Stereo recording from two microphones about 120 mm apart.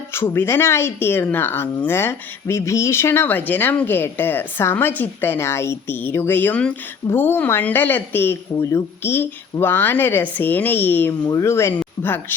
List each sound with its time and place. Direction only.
0.1 s a woman's voice: 20° left (ahead or behind)